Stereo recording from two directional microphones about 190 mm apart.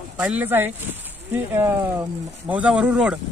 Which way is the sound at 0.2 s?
10° right (ahead or behind).